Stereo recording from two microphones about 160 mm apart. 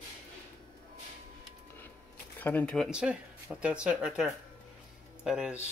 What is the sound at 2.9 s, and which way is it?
Speech, 5° right (ahead or behind).